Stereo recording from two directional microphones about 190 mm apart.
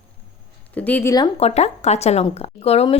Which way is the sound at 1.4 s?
35° left (ahead or behind).